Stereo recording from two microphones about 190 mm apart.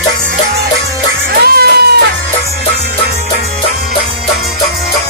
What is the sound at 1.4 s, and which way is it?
Music, 55° right (ahead or behind).